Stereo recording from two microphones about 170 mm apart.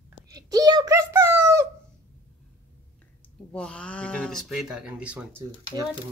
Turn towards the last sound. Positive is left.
turn(degrees=-15)  # may be behind; listen again after turning